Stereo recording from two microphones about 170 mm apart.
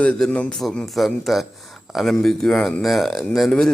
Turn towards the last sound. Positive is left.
turn(degrees=0)  # may be behind; listen again after turning